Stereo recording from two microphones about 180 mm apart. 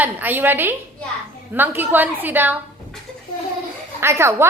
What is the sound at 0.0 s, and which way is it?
A woman's voice, 10° right (ahead or behind).